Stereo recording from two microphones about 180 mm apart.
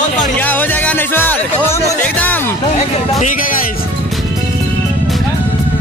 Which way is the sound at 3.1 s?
50° left (ahead or behind).